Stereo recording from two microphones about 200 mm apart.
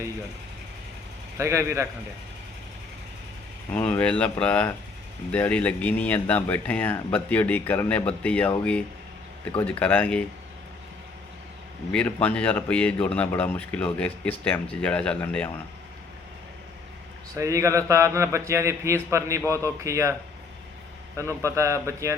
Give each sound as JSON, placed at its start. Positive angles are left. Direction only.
{"t": 1.4, "sound": "a man's voice", "side_deg": -15}
{"t": 3.7, "sound": "speech", "side_deg": 10}
{"t": 9.6, "sound": "speech", "side_deg": 10}
{"t": 11.9, "sound": "speech", "side_deg": 5}
{"t": 17.3, "sound": "a man's voice", "side_deg": -15}
{"t": 21.2, "sound": "a man's voice", "side_deg": -15}